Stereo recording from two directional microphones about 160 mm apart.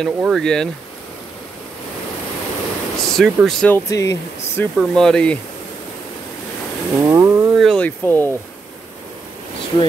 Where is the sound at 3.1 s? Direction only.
Centre (ahead or behind).